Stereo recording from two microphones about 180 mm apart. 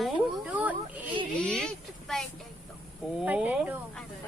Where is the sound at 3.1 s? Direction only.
10° right (ahead or behind).